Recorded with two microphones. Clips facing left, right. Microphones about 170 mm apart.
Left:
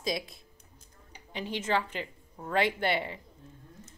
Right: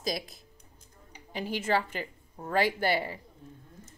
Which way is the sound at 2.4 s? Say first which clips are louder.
Right 1 dB; 40° right (ahead or behind).